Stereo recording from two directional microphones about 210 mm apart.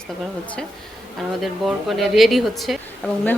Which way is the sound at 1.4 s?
Centre (ahead or behind).